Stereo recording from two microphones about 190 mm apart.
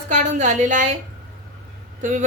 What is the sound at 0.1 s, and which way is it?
Speech, 40° right (ahead or behind).